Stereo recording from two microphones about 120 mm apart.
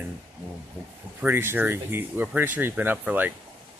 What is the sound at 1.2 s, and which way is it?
Speech, 20° right (ahead or behind).